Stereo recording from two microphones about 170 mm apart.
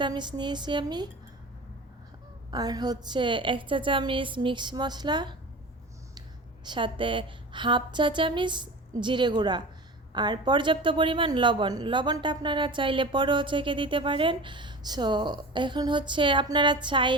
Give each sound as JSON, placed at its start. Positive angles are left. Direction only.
{"t": 0.0, "sound": "a woman's voice", "side_deg": -25}
{"t": 2.5, "sound": "a woman's voice", "side_deg": -25}
{"t": 6.7, "sound": "a woman's voice", "side_deg": -30}